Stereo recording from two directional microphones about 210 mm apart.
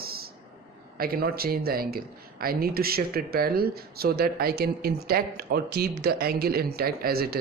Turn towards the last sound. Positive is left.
turn(degrees=-45)  # may be behind; listen again after turning